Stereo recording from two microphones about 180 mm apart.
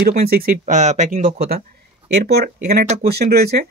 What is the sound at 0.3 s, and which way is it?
Speech, 55° right (ahead or behind).